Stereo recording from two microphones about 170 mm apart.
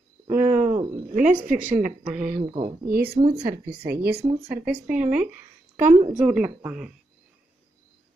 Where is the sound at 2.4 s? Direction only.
30° right (ahead or behind).